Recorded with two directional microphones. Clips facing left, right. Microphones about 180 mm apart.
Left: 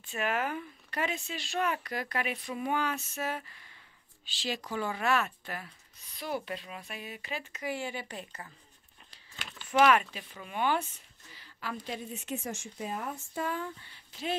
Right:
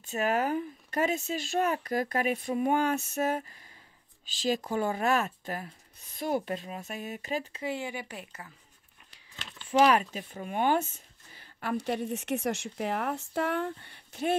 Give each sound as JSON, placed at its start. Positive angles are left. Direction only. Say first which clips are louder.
{"t": 0.0, "sound": "speech", "louder": "right 4 dB", "side_deg": -40}
{"t": 7.6, "sound": "speech", "louder": "right 2 dB", "side_deg": -20}
{"t": 9.7, "sound": "speech", "louder": "right 1 dB", "side_deg": -30}
{"t": 10.1, "sound": "a woman's voice", "louder": "right 5 dB", "side_deg": -45}